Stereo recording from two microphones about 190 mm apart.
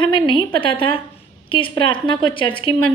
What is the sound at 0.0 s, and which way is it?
A woman's voice, 25° left (ahead or behind).